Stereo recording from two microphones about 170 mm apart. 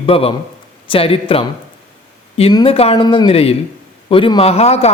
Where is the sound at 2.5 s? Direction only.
25° left (ahead or behind).